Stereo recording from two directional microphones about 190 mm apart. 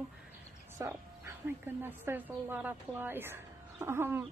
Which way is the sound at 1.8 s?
10° right (ahead or behind).